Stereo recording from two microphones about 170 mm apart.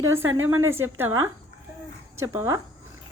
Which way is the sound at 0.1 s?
15° right (ahead or behind).